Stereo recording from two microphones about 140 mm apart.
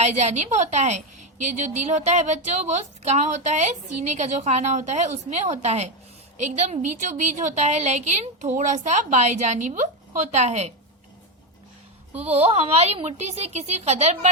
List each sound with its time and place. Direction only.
0.0 s a woman's voice: 50° right (ahead or behind)
12.3 s a woman's voice: 50° right (ahead or behind)